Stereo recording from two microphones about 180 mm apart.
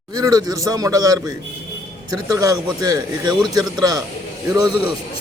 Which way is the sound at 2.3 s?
20° right (ahead or behind).